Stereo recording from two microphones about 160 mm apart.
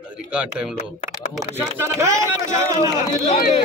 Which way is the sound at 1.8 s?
20° right (ahead or behind).